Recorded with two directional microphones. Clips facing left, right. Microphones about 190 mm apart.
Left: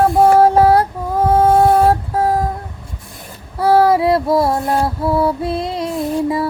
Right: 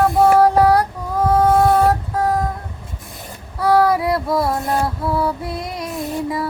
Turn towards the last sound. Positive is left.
turn(degrees=25)  # may be behind; listen again after turning